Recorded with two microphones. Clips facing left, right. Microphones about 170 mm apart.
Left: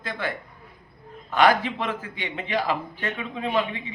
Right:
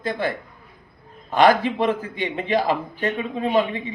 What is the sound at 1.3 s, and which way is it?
A man's voice, 40° right (ahead or behind).